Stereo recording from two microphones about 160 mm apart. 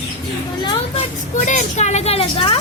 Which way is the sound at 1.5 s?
50° left (ahead or behind).